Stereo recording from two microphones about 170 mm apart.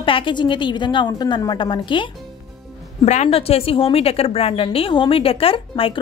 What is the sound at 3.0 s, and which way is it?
A woman's voice, 40° left (ahead or behind).